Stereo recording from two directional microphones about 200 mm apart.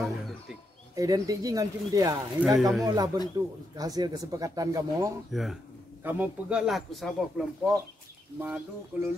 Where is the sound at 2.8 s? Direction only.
20° right (ahead or behind).